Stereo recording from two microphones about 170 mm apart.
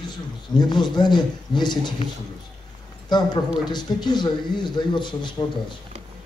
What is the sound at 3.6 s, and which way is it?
A man's voice, 25° left (ahead or behind).